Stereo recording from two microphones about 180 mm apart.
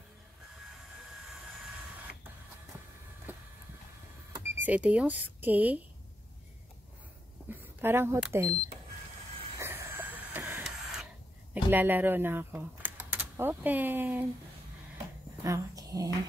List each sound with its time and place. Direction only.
3.3 s vehicle: 10° right (ahead or behind)
4.3 s speech: 10° right (ahead or behind)
7.4 s speech: 10° right (ahead or behind)
9.6 s printer: 10° right (ahead or behind)
11.5 s speech: 10° right (ahead or behind)
15.4 s a sound: 20° right (ahead or behind)